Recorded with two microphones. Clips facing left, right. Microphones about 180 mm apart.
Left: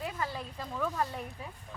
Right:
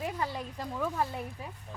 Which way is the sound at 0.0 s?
20° right (ahead or behind).